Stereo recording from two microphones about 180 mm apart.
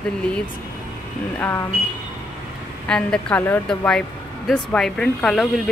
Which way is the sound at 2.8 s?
5° left (ahead or behind).